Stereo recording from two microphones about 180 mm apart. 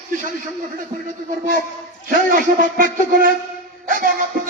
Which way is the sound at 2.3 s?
50° right (ahead or behind).